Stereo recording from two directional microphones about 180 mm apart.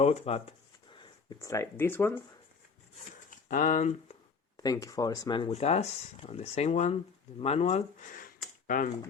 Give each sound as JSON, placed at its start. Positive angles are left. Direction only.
{"t": 0.0, "sound": "speech", "side_deg": 35}
{"t": 3.2, "sound": "a sound", "side_deg": 45}
{"t": 4.5, "sound": "speech", "side_deg": 20}